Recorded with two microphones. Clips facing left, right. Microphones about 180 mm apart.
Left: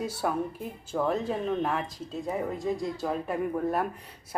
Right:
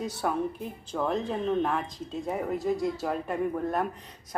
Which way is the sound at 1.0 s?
5° left (ahead or behind).